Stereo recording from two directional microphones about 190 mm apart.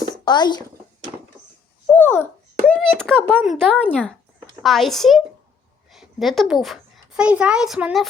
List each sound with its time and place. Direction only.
0.3 s speech: 20° left (ahead or behind)
1.9 s babbling: 10° left (ahead or behind)
2.6 s a child's voice: 5° left (ahead or behind)